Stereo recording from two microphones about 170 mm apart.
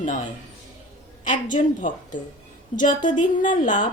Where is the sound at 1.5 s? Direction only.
50° left (ahead or behind).